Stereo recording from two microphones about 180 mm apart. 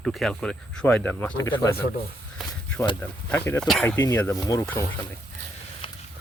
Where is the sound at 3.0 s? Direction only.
10° left (ahead or behind).